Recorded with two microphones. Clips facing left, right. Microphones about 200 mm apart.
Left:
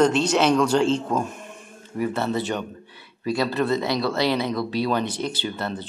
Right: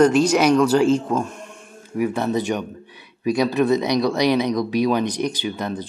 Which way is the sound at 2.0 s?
15° right (ahead or behind).